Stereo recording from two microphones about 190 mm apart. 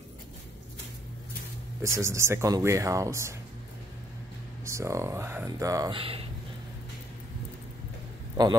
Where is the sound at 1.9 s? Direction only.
15° right (ahead or behind).